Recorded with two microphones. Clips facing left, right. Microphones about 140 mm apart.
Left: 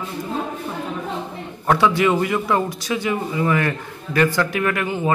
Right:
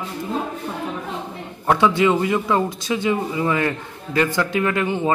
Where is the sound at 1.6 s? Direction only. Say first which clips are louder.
Even; 20° right (ahead or behind).